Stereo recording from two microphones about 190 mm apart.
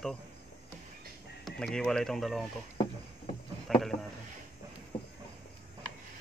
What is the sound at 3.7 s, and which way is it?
Boat, centre (ahead or behind).